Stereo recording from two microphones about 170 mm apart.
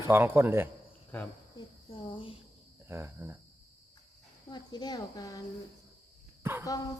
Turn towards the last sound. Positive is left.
turn(degrees=-15)  # may be behind; listen again after turning